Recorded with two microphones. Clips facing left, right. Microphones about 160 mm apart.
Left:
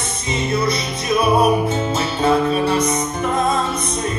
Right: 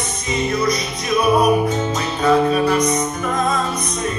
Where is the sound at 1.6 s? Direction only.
30° left (ahead or behind).